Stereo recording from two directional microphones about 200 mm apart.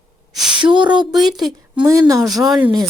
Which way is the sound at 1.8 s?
20° right (ahead or behind).